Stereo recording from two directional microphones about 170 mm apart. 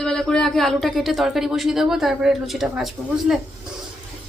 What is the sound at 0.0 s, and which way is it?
A woman's voice, 5° left (ahead or behind).